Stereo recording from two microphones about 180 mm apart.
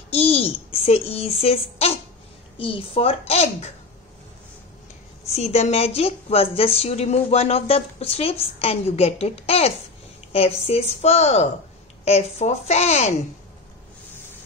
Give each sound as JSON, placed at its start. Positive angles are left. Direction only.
{"t": 0.1, "sound": "a sound", "side_deg": 35}
{"t": 0.8, "sound": "speech", "side_deg": 35}
{"t": 5.3, "sound": "speech", "side_deg": 35}